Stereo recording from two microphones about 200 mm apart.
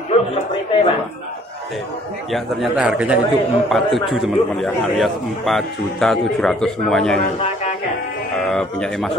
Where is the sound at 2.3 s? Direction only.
Centre (ahead or behind).